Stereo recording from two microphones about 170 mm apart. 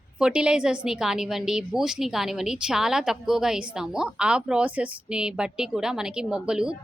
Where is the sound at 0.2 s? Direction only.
5° right (ahead or behind).